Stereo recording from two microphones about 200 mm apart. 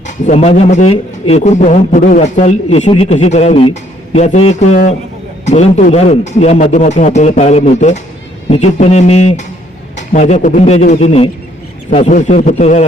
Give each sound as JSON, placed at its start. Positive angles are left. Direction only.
{"t": 0.3, "sound": "speech", "side_deg": 35}